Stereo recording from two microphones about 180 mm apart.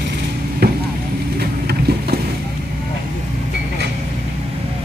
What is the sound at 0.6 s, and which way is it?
Vehicle, 65° right (ahead or behind).